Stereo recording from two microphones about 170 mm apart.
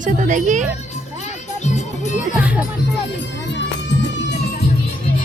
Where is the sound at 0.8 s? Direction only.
40° left (ahead or behind).